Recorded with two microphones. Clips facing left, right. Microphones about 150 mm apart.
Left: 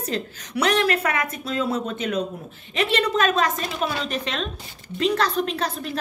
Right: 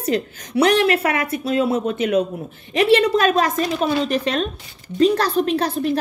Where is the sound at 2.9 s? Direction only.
35° right (ahead or behind).